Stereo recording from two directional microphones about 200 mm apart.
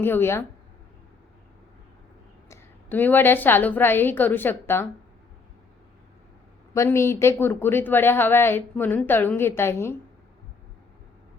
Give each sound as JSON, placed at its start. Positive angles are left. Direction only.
{"t": 0.0, "sound": "a woman's voice", "side_deg": 10}
{"t": 2.5, "sound": "a woman's voice", "side_deg": 10}
{"t": 6.7, "sound": "a woman's voice", "side_deg": 15}